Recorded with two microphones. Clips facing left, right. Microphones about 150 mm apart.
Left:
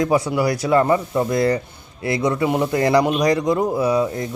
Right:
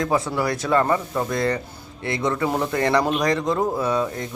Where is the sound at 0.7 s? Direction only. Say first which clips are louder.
Left 3 dB; 25° left (ahead or behind).